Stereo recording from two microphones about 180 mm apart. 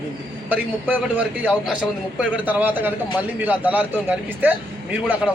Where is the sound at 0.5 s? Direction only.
10° right (ahead or behind).